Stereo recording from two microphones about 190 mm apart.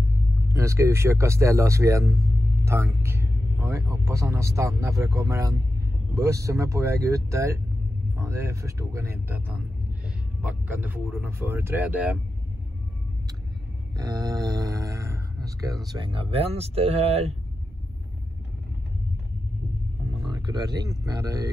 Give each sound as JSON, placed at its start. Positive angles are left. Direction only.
{"t": 0.5, "sound": "speech", "side_deg": -15}
{"t": 13.9, "sound": "a sound", "side_deg": -20}
{"t": 15.8, "sound": "speech", "side_deg": -20}
{"t": 20.1, "sound": "speech", "side_deg": -25}